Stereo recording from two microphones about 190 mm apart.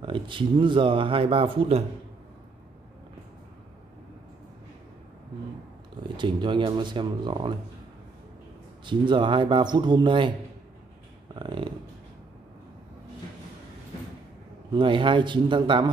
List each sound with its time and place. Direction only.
0.0 s speech: 25° right (ahead or behind)
6.1 s speech: 25° right (ahead or behind)
8.8 s speech: 25° right (ahead or behind)
11.3 s speech: 25° right (ahead or behind)
14.7 s speech: 25° right (ahead or behind)